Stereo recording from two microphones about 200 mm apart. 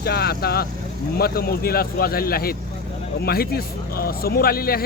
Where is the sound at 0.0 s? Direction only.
50° left (ahead or behind).